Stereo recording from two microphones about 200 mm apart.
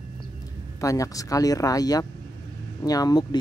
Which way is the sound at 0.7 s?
15° left (ahead or behind).